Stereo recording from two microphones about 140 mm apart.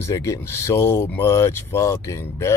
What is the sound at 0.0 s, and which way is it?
Speech, 20° left (ahead or behind).